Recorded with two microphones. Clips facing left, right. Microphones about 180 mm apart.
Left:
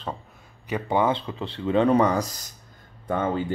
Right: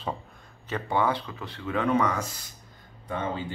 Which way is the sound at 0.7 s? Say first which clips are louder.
Left 3 dB; 15° left (ahead or behind).